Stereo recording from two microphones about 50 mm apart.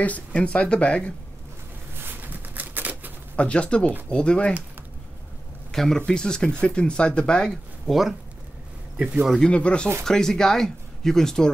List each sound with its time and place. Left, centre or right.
0.3 s speech: left
2.0 s a sound: right
3.3 s speech: left
5.7 s speech: centre
7.8 s speech: centre
8.9 s speech: right
9.4 s speech: left
10.0 s speech: centre